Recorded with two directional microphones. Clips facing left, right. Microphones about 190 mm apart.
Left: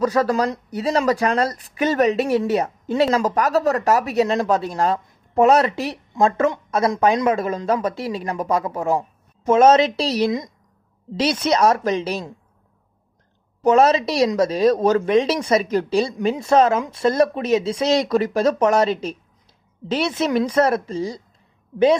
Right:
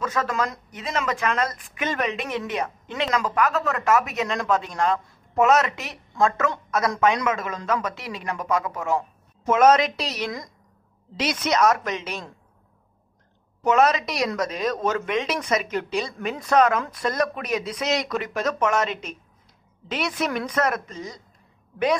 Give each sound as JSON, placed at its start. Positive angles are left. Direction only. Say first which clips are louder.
{"t": 0.0, "sound": "speech", "louder": "left 7 dB", "side_deg": 35}
{"t": 13.7, "sound": "speech", "louder": "left 5 dB", "side_deg": 30}